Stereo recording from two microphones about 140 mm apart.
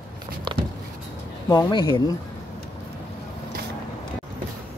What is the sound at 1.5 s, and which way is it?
Speech, 30° left (ahead or behind).